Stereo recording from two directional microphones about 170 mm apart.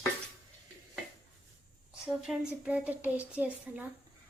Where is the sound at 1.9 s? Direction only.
5° right (ahead or behind).